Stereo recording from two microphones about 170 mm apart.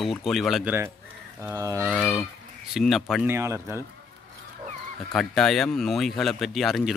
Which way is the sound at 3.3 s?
15° right (ahead or behind).